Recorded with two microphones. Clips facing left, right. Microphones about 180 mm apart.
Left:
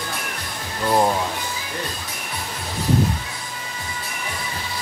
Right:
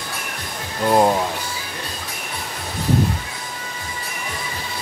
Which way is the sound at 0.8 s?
15° right (ahead or behind).